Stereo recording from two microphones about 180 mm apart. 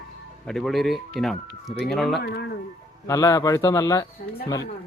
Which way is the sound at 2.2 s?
60° left (ahead or behind).